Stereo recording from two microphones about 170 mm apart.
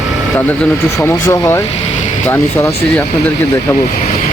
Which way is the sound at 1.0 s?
15° left (ahead or behind).